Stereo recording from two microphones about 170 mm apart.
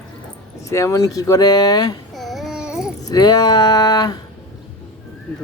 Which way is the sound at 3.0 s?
25° left (ahead or behind).